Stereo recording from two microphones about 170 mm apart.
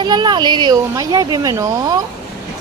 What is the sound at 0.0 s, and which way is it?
Speech, 25° right (ahead or behind).